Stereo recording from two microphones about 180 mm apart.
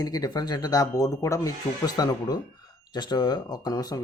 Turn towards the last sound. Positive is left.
turn(degrees=20)  # may be behind; listen again after turning